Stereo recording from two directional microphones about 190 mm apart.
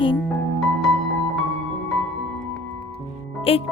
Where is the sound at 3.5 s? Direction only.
30° left (ahead or behind).